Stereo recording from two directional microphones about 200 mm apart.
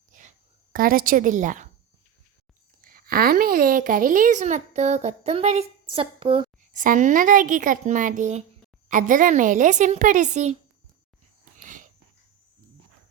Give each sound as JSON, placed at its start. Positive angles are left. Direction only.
{"t": 0.7, "sound": "a woman's voice", "side_deg": -45}
{"t": 2.8, "sound": "a woman's voice", "side_deg": -45}
{"t": 6.7, "sound": "a woman's voice", "side_deg": -40}
{"t": 11.5, "sound": "wheeze", "side_deg": -40}